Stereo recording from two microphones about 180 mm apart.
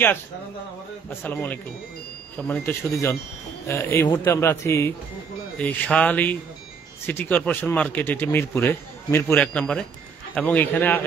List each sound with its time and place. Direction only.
1.2 s speech: 10° left (ahead or behind)